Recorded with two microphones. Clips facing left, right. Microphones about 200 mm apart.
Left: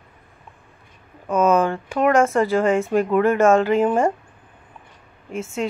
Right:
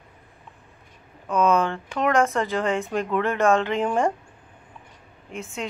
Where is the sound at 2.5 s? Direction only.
50° left (ahead or behind).